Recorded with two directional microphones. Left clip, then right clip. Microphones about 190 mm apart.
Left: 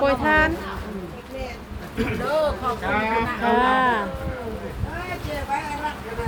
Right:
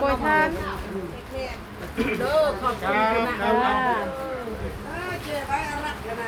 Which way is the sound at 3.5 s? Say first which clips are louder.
Left 4 dB; 55° left (ahead or behind).